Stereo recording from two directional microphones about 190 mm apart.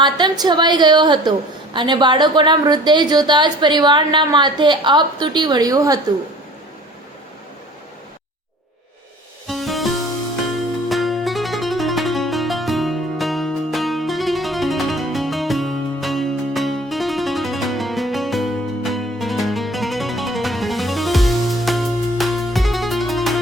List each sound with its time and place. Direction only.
0.0 s a woman's voice: 25° right (ahead or behind)
9.5 s music: centre (ahead or behind)